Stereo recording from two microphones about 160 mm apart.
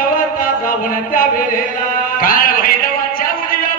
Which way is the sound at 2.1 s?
60° left (ahead or behind).